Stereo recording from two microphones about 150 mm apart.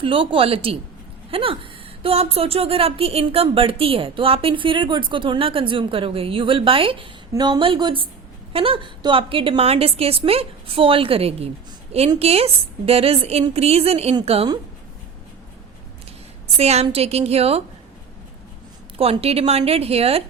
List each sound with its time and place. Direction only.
0.0 s a woman's voice: 35° right (ahead or behind)
16.6 s a woman's voice: 45° right (ahead or behind)
18.9 s speech: 40° right (ahead or behind)